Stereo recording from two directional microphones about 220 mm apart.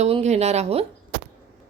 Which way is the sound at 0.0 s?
30° right (ahead or behind).